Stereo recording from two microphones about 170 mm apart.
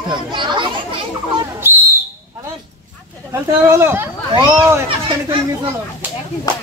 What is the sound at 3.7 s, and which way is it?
Speech, 15° right (ahead or behind).